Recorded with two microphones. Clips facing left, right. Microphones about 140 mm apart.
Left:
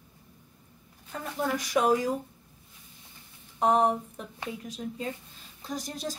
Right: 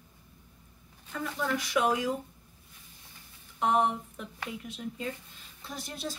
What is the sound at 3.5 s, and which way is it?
A woman's voice, 40° left (ahead or behind).